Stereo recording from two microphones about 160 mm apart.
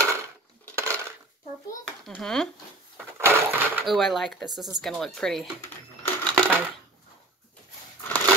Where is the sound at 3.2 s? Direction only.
15° right (ahead or behind).